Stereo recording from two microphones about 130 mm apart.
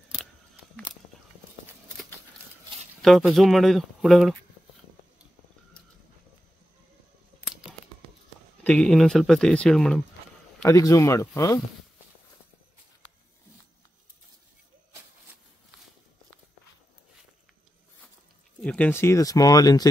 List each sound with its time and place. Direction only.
3.0 s a sound: centre (ahead or behind)
3.3 s speech: centre (ahead or behind)
8.6 s speech: 10° left (ahead or behind)
10.6 s speech: 25° left (ahead or behind)
18.6 s speech: 10° left (ahead or behind); by 19.9 s 30° left (ahead or behind)